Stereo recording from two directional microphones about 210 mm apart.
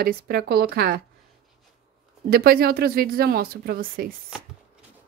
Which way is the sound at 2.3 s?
45° right (ahead or behind).